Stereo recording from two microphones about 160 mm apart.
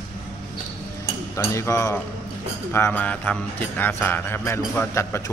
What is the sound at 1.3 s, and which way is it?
Music, 20° left (ahead or behind).